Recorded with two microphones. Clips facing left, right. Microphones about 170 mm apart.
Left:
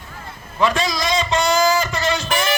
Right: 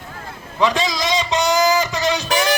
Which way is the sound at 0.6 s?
20° right (ahead or behind).